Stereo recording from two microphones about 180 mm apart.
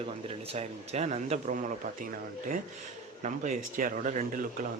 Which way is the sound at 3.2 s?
45° right (ahead or behind).